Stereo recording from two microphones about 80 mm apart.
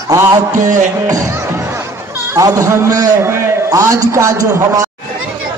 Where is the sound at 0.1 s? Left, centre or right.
Right.